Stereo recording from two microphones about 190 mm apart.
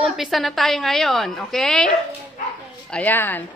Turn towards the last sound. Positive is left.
turn(degrees=10)  # may be behind; listen again after turning